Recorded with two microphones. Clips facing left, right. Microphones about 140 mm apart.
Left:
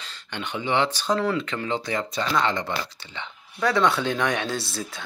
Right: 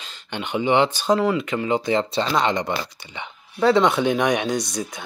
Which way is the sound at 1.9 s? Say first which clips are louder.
Right 5 dB; 25° right (ahead or behind).